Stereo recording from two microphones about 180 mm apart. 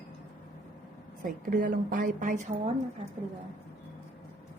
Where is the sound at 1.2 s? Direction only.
50° right (ahead or behind).